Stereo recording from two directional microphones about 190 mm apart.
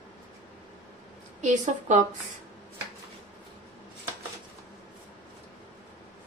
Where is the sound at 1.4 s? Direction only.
40° right (ahead or behind).